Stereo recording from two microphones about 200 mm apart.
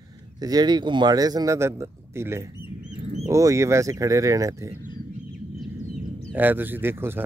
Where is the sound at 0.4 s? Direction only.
20° right (ahead or behind).